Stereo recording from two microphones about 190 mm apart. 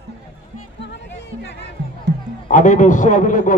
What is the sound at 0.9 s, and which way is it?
Music, 65° left (ahead or behind).